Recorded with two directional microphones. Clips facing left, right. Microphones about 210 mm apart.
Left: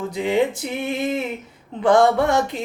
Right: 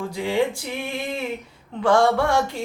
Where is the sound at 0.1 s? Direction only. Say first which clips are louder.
Left 3 dB; 20° left (ahead or behind).